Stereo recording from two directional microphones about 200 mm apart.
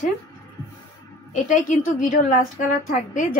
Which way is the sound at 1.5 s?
40° left (ahead or behind).